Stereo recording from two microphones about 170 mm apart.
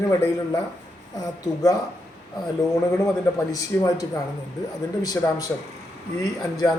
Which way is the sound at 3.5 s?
20° left (ahead or behind).